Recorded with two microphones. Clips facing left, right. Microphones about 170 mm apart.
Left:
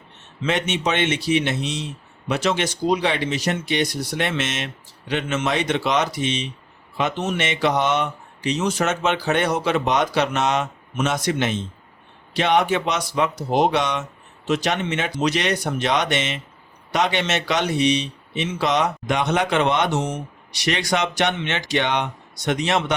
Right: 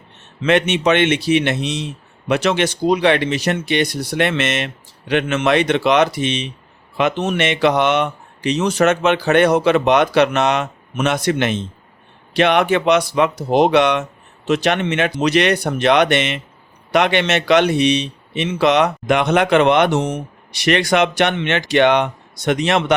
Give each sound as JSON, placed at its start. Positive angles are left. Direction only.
{"t": 0.4, "sound": "speech", "side_deg": -65}